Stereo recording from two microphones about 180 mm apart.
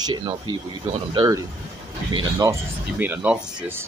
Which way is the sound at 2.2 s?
15° right (ahead or behind).